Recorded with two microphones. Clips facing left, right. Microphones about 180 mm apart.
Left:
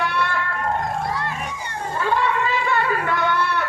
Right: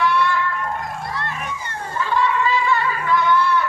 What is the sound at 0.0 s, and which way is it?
Music, 55° left (ahead or behind).